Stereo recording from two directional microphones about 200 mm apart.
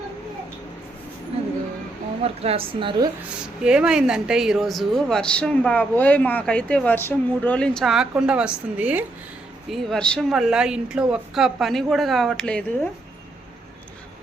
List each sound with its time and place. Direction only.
2.2 s a woman's voice: 30° right (ahead or behind)
3.4 s speech: 5° right (ahead or behind)